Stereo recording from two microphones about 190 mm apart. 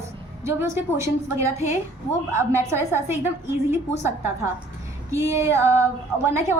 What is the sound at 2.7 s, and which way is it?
A woman's voice, 15° right (ahead or behind).